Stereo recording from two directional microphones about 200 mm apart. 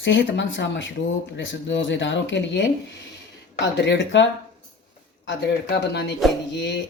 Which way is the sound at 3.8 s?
60° left (ahead or behind).